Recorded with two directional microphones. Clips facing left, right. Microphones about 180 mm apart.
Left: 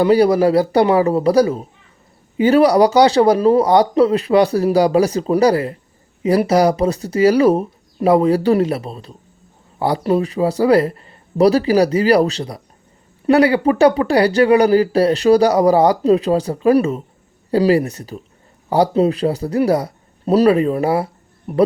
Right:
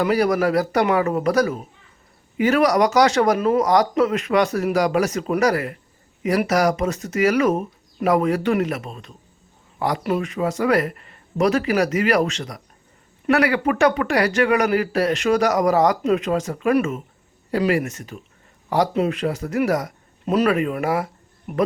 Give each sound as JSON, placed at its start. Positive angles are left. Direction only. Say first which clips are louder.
{"t": 0.0, "sound": "speech", "louder": "left 6 dB", "side_deg": 30}